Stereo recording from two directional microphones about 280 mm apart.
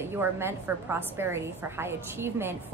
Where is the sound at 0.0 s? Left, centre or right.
Centre.